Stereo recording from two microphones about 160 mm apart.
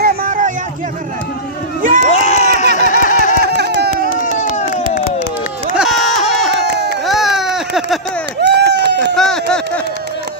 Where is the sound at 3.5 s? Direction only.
90° right.